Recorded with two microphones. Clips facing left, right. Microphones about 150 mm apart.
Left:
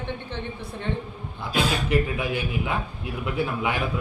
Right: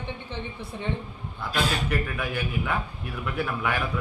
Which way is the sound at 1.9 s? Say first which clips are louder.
Left 5 dB; 25° left (ahead or behind).